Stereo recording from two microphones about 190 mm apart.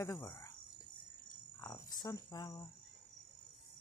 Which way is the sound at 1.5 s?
20° left (ahead or behind).